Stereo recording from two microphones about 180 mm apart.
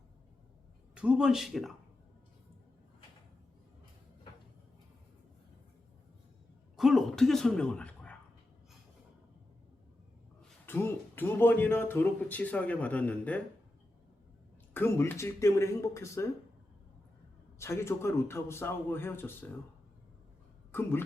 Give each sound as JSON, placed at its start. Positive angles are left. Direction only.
{"t": 0.9, "sound": "speech", "side_deg": -5}
{"t": 6.7, "sound": "a sound", "side_deg": 0}
{"t": 10.7, "sound": "speech", "side_deg": 10}
{"t": 14.7, "sound": "speech", "side_deg": 15}
{"t": 17.6, "sound": "speech", "side_deg": 15}
{"t": 20.7, "sound": "speech", "side_deg": 10}